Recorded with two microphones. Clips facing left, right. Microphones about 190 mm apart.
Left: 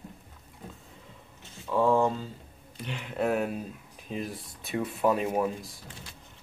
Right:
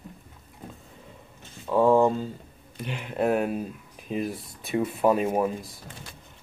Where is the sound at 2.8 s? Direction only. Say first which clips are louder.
Right 3 dB; 5° right (ahead or behind).